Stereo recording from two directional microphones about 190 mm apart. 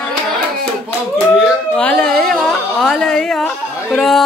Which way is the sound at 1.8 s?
5° left (ahead or behind).